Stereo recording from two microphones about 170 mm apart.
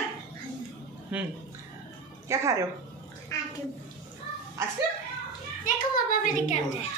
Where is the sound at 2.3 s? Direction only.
15° right (ahead or behind).